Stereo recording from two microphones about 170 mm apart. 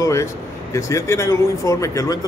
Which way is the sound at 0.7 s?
20° left (ahead or behind).